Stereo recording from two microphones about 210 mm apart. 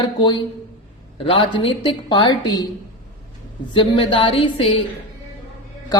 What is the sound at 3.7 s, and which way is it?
A man's voice, 25° left (ahead or behind).